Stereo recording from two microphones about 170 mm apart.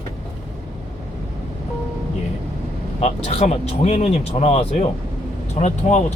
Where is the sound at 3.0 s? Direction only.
40° left (ahead or behind).